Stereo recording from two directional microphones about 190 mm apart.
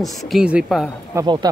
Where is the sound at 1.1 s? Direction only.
20° right (ahead or behind).